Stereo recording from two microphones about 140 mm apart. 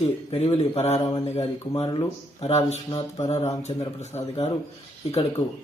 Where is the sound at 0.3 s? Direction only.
45° left (ahead or behind).